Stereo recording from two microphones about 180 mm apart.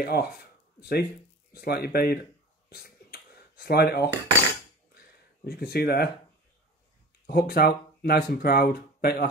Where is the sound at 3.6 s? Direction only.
65° left (ahead or behind).